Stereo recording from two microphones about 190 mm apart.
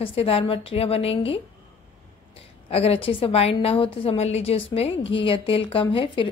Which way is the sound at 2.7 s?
30° left (ahead or behind).